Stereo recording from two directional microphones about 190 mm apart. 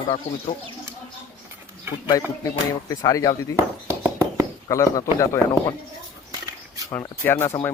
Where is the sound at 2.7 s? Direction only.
20° left (ahead or behind).